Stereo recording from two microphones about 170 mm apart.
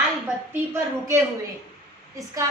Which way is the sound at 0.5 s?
15° right (ahead or behind).